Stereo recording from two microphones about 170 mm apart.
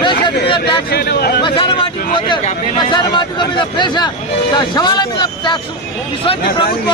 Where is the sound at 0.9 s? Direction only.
70° left (ahead or behind).